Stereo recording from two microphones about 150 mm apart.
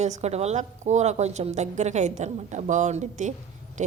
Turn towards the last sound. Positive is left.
turn(degrees=-50)  # may be behind; listen again after turning